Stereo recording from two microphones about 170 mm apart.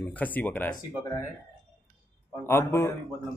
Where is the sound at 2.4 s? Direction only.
15° left (ahead or behind).